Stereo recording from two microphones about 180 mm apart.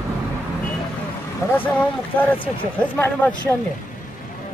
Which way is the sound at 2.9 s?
10° left (ahead or behind).